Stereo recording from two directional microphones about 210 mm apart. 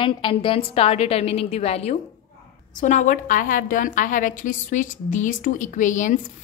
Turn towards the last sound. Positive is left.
turn(degrees=35)  # may be behind; listen again after turning